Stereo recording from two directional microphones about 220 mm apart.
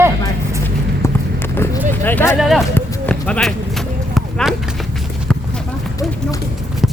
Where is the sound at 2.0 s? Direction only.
10° left (ahead or behind).